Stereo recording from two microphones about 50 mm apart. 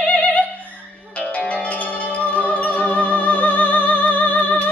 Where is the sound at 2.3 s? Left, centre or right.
Left.